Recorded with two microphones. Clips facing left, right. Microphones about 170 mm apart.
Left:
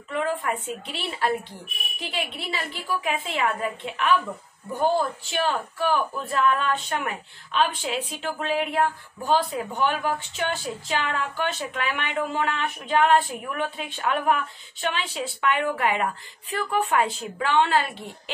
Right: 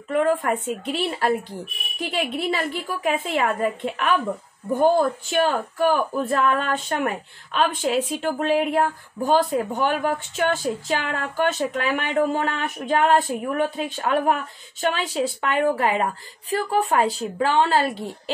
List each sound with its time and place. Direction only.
0.1 s a woman's voice: 50° right (ahead or behind)
5.3 s speech: 50° right (ahead or behind)